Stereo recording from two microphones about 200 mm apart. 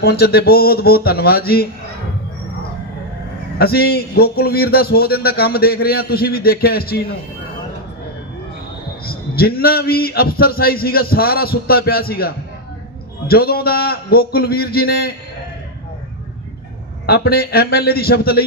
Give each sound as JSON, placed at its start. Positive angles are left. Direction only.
{"t": 0.0, "sound": "a man's voice", "side_deg": 55}
{"t": 3.6, "sound": "a man's voice", "side_deg": 50}
{"t": 9.0, "sound": "a man's voice", "side_deg": 50}
{"t": 17.1, "sound": "a man's voice", "side_deg": 50}